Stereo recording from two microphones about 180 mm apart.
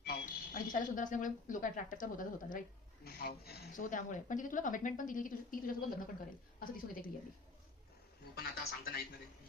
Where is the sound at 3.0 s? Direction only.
60° left (ahead or behind).